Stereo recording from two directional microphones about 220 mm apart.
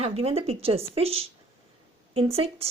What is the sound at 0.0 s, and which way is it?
A woman's voice, 30° right (ahead or behind).